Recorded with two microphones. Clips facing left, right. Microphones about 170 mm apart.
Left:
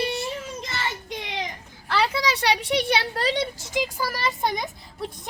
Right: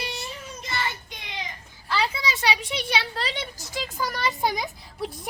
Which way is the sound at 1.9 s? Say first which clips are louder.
Left 3 dB; 70° left (ahead or behind).